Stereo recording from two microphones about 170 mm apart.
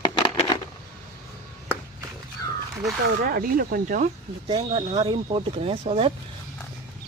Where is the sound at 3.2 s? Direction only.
55° right (ahead or behind).